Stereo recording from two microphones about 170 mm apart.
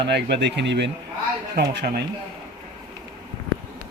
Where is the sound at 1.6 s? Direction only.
65° right (ahead or behind).